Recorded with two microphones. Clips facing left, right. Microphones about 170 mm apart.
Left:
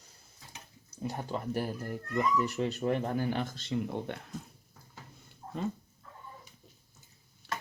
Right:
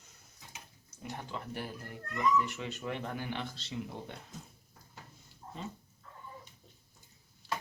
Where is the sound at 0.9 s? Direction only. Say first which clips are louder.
Left 7 dB; 40° left (ahead or behind); by 4.2 s 60° left (ahead or behind).